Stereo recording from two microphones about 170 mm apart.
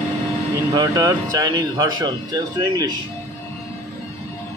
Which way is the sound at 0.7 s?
20° right (ahead or behind).